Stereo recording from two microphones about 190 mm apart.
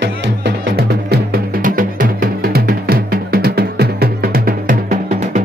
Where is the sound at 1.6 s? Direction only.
45° right (ahead or behind).